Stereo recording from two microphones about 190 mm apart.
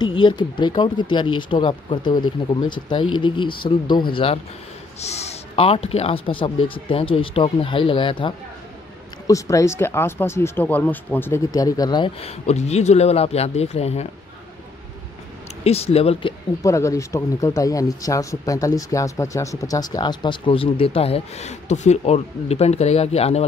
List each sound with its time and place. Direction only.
0.0 s speech: 25° left (ahead or behind)
9.3 s speech: 15° left (ahead or behind); by 14.0 s 35° left (ahead or behind)
15.6 s speech: 30° left (ahead or behind)
16.6 s speech: 15° left (ahead or behind); by 23.4 s 35° left (ahead or behind)